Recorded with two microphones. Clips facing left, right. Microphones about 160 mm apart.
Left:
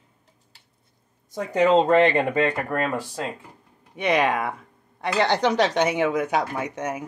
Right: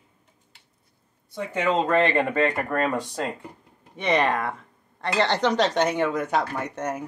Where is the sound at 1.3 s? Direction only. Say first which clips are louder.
Left 5 dB; 40° left (ahead or behind); by 7.0 s 5° left (ahead or behind).